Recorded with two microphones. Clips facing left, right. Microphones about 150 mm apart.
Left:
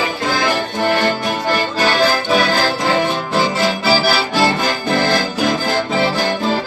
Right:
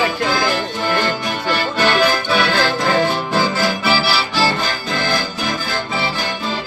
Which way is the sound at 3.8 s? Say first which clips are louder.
Left 4 dB; 40° left (ahead or behind).